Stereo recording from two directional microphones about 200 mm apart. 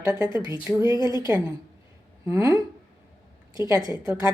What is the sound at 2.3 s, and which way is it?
Speech, 15° right (ahead or behind).